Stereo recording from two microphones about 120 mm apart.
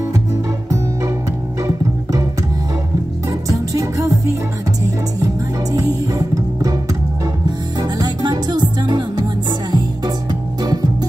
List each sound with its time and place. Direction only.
3.3 s music: 25° right (ahead or behind)